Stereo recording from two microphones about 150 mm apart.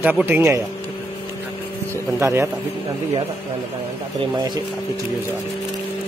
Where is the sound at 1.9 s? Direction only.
20° right (ahead or behind).